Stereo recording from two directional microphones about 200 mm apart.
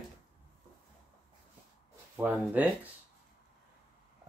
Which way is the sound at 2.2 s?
5° right (ahead or behind).